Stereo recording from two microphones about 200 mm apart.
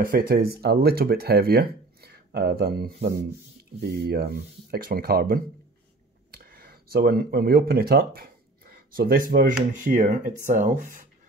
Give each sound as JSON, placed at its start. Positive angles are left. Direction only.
{"t": 0.0, "sound": "speech", "side_deg": -45}